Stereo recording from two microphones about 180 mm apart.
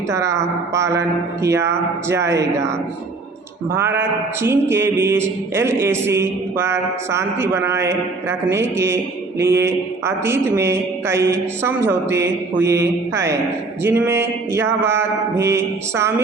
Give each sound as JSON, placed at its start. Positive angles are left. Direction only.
{"t": 0.1, "sound": "mantra", "side_deg": -15}
{"t": 3.7, "sound": "mantra", "side_deg": -15}